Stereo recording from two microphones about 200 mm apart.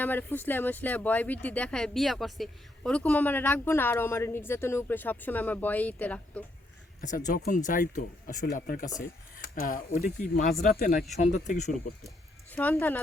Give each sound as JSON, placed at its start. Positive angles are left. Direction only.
{"t": 0.0, "sound": "speech", "side_deg": 10}
{"t": 7.5, "sound": "speech", "side_deg": 40}
{"t": 12.0, "sound": "a sound", "side_deg": 10}